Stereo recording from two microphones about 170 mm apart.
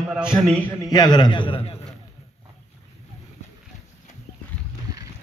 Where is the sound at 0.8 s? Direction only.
25° left (ahead or behind).